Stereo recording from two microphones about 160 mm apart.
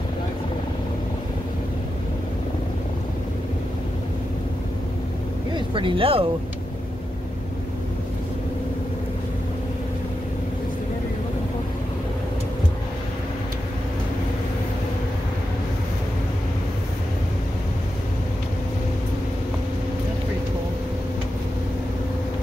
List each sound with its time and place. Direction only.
5.7 s speech: 30° right (ahead or behind)